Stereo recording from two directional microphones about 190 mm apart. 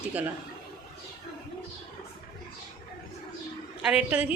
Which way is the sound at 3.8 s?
5° right (ahead or behind).